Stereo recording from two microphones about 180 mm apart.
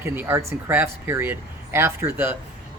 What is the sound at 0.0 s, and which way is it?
Speech, 15° right (ahead or behind).